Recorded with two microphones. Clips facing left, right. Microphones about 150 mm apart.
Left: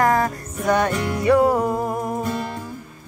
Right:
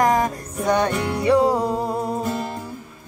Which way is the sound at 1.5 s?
15° left (ahead or behind).